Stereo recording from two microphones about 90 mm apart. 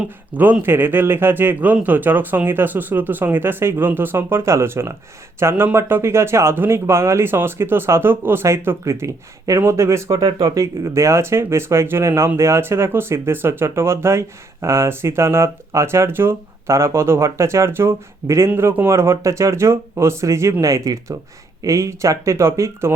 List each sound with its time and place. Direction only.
0.6 s speech: 25° right (ahead or behind)